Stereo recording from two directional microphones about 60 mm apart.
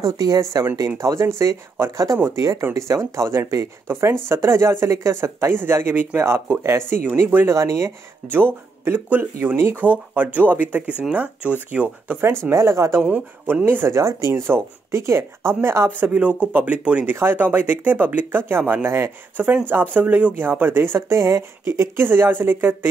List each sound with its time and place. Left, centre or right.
0.0 s speech: right
8.3 s speech: right
10.9 s speech: right
12.4 s speech: right
13.0 s speech: right
13.8 s speech: right
16.0 s speech: right
17.1 s speech: right
18.9 s speech: right
19.4 s speech: right
21.3 s speech: right